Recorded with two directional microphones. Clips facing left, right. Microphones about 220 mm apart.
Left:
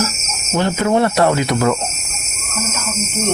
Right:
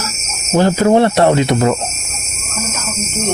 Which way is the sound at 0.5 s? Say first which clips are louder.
Right 5 dB; 35° right (ahead or behind).